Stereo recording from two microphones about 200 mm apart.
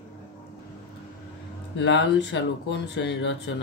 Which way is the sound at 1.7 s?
65° left (ahead or behind).